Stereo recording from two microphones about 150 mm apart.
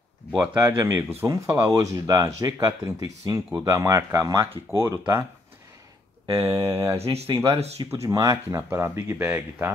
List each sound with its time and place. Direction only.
0.6 s speech: 20° right (ahead or behind)
6.2 s speech: 40° right (ahead or behind)
6.5 s speech: 20° right (ahead or behind)
7.0 s speech: 45° right (ahead or behind)
7.9 s speech: 20° right (ahead or behind)